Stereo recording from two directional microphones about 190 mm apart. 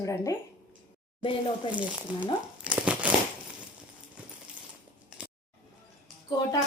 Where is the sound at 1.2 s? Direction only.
25° left (ahead or behind).